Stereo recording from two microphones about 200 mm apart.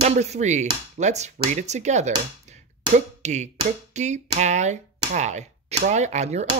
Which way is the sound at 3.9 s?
35° right (ahead or behind).